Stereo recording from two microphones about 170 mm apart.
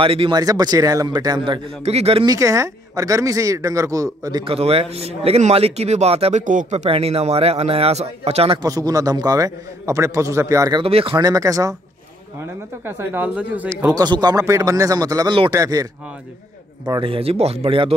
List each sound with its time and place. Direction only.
0.0 s speech: 30° right (ahead or behind)
2.2 s speech: 20° right (ahead or behind)
4.6 s speech: 35° right (ahead or behind)
6.4 s speech: 50° right (ahead or behind)
8.6 s speech: 20° right (ahead or behind)
10.8 s speech: 35° right (ahead or behind); by 13.7 s 10° right (ahead or behind)
13.9 s speech: 25° right (ahead or behind)